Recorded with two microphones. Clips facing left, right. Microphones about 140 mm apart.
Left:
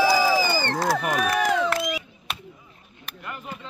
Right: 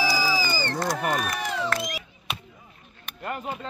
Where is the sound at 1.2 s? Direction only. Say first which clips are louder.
Left 7 dB; 80° left.